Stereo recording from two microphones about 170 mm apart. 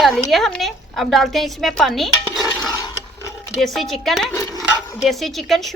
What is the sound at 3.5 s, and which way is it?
Speech, centre (ahead or behind).